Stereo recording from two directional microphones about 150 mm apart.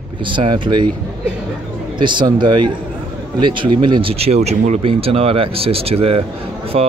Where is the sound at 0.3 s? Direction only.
30° right (ahead or behind).